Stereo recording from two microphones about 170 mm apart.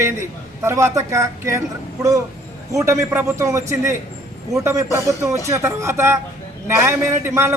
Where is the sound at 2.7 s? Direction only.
20° right (ahead or behind).